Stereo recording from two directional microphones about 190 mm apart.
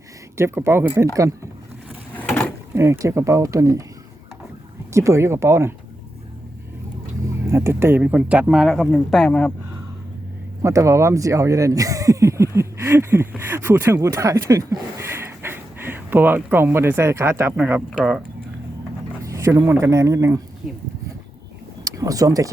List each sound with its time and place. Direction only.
0.3 s speech: 15° right (ahead or behind)
2.1 s a sound: 10° left (ahead or behind)
2.7 s speech: 15° right (ahead or behind)
4.9 s speech: 15° right (ahead or behind)
7.4 s speech: 15° right (ahead or behind); by 9.5 s 5° left (ahead or behind)
10.6 s speech: 15° right (ahead or behind)
19.2 s speech: 15° right (ahead or behind)
21.8 s speech: 20° right (ahead or behind)